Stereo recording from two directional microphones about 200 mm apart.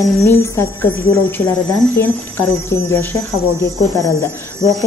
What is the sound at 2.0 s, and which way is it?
A woman's voice, 10° left (ahead or behind).